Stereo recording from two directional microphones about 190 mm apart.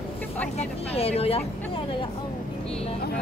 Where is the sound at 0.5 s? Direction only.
30° left (ahead or behind).